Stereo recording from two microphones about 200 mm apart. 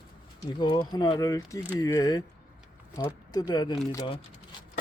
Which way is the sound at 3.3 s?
20° left (ahead or behind).